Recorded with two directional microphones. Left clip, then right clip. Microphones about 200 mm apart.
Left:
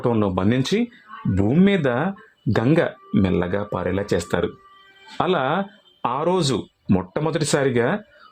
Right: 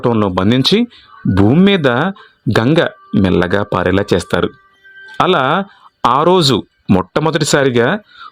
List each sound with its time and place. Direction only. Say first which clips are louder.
0.0 s speech: right 7 dB; 25° right (ahead or behind)
4.1 s speech: right 7 dB; 30° right (ahead or behind)
6.0 s speech: right 11 dB; 40° right (ahead or behind)